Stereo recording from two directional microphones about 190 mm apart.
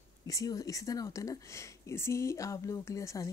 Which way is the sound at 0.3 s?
20° left (ahead or behind).